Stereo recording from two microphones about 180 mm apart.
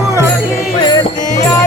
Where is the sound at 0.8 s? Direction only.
20° left (ahead or behind).